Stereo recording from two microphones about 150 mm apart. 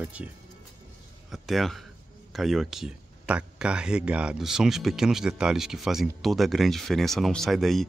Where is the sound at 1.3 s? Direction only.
Centre (ahead or behind).